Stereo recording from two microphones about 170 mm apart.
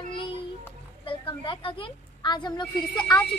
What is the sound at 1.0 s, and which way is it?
A woman's voice, 30° left (ahead or behind).